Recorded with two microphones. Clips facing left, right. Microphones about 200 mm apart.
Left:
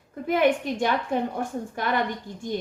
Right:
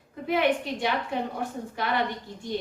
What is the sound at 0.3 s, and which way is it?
A woman's voice, 45° left (ahead or behind).